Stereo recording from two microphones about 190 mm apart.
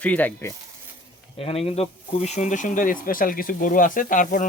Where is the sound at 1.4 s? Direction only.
30° left (ahead or behind).